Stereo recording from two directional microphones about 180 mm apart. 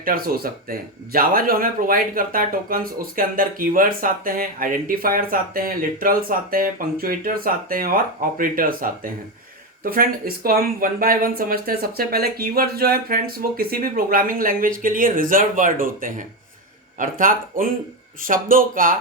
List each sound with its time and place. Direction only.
0.0 s speech: 55° right (ahead or behind)